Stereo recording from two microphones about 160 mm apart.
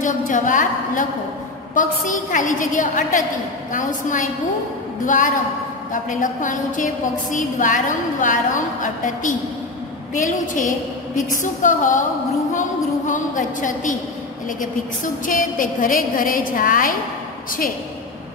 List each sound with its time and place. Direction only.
0.0 s a woman's voice: 55° left (ahead or behind)
11.2 s a woman's voice: 55° left (ahead or behind)
12.5 s a sound: 50° left (ahead or behind)
15.2 s a woman's voice: 55° left (ahead or behind)